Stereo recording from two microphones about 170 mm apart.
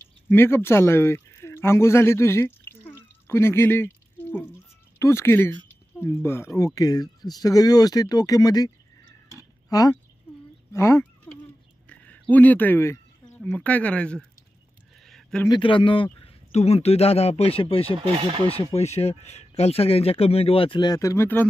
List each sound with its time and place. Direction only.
0.3 s speech: 10° left (ahead or behind)
11.3 s a sound: 5° left (ahead or behind)
13.4 s speech: 5° left (ahead or behind)
15.0 s a sound: centre (ahead or behind)
15.4 s speech: 25° left (ahead or behind)
18.0 s speech: 35° right (ahead or behind)
18.6 s speech: 35° left (ahead or behind); by 21.5 s 15° left (ahead or behind)